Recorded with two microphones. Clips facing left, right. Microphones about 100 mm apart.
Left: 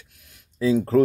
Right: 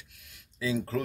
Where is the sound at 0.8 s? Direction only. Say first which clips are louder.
Left 15 dB; 40° left (ahead or behind).